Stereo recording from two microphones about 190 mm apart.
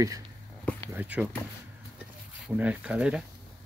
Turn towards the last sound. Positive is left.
turn(degrees=-5)  # may be behind; listen again after turning